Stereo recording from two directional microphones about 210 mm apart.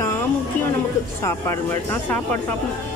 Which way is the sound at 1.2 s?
15° left (ahead or behind).